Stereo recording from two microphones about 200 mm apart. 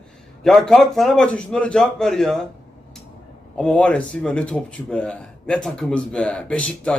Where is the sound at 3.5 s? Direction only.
5° left (ahead or behind).